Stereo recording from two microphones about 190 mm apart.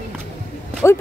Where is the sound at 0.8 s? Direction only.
15° left (ahead or behind).